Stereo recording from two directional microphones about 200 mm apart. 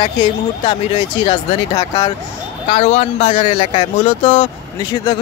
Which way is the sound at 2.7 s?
35° left (ahead or behind).